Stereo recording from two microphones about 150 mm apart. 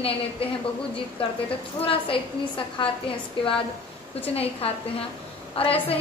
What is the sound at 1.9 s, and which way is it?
A woman's voice, 35° left (ahead or behind).